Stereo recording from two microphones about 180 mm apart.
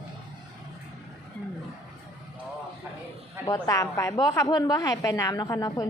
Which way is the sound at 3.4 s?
20° left (ahead or behind).